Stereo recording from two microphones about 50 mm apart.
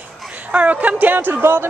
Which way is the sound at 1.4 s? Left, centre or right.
Right.